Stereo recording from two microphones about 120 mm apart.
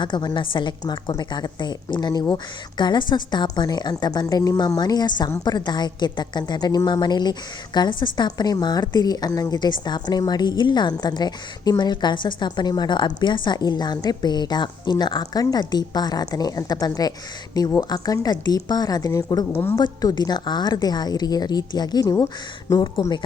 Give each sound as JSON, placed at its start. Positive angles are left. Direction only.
{"t": 0.0, "sound": "a woman's voice", "side_deg": 35}